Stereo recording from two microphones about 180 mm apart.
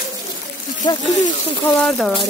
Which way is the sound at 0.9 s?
25° left (ahead or behind).